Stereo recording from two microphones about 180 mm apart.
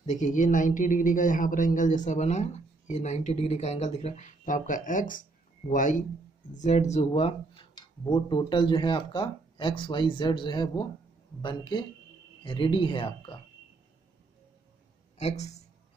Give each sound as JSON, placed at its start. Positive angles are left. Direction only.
{"t": 0.0, "sound": "a man's voice", "side_deg": 45}
{"t": 7.7, "sound": "speech", "side_deg": 25}
{"t": 15.1, "sound": "speech", "side_deg": 35}